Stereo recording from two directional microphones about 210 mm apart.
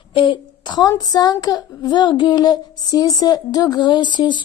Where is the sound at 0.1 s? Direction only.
25° left (ahead or behind).